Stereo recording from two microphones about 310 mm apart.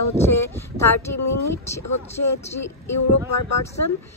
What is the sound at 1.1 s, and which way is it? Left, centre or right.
Speech, left.